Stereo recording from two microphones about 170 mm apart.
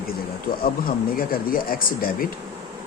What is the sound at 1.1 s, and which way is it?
Speech, 60° left (ahead or behind).